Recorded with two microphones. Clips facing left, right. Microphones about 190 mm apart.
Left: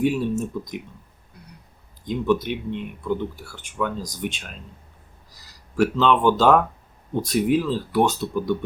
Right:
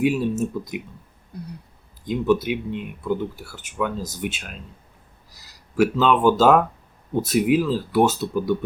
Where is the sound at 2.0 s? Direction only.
5° right (ahead or behind).